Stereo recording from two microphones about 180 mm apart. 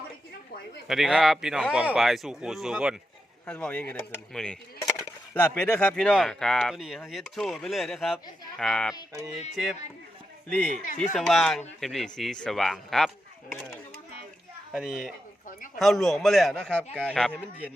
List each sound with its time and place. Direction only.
0.9 s speech: centre (ahead or behind)
10.7 s speech: 45° left (ahead or behind)
11.1 s speech: centre (ahead or behind)
14.7 s a man's voice: centre (ahead or behind)
15.4 s a sound: 45° left (ahead or behind)
15.8 s speech: centre (ahead or behind)